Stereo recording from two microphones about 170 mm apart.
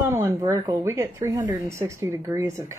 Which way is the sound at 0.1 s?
15° right (ahead or behind).